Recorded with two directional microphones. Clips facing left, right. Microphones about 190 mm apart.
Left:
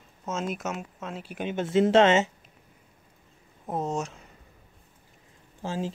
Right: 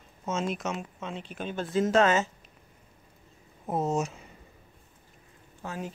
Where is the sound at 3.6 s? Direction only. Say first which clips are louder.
Right 2 dB; 5° right (ahead or behind).